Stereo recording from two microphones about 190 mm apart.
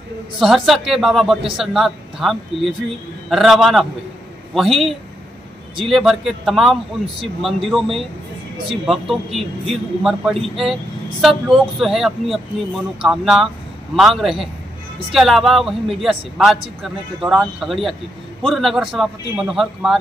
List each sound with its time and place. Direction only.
0.4 s speech: centre (ahead or behind)